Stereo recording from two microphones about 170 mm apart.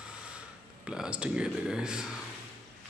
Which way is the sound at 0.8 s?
5° right (ahead or behind).